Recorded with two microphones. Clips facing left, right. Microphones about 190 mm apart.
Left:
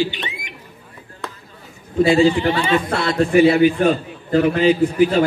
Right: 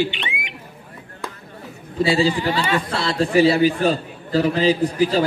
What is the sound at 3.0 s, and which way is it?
A man's voice, 30° right (ahead or behind).